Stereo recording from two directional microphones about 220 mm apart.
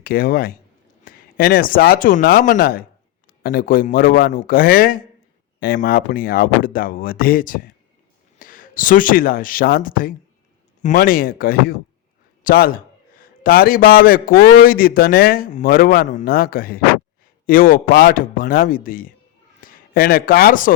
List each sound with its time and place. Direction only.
0.0 s a man's voice: 40° left (ahead or behind)